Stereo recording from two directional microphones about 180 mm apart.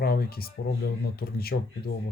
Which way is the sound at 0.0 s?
55° left (ahead or behind).